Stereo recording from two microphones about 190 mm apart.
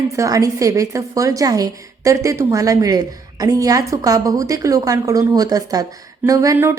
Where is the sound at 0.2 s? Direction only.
15° right (ahead or behind).